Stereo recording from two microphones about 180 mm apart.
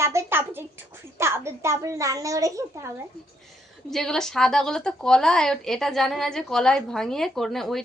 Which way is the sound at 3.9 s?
5° left (ahead or behind).